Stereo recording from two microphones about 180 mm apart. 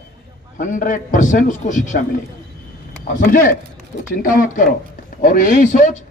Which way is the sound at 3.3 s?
50° left (ahead or behind).